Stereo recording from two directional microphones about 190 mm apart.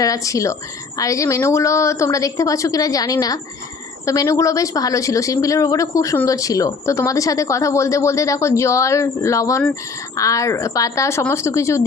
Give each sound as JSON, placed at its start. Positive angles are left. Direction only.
{"t": 0.0, "sound": "speech", "side_deg": 15}